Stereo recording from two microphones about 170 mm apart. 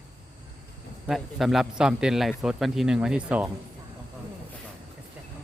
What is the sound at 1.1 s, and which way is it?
A man's voice, centre (ahead or behind).